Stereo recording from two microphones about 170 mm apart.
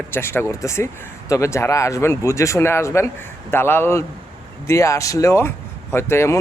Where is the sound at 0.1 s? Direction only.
15° left (ahead or behind).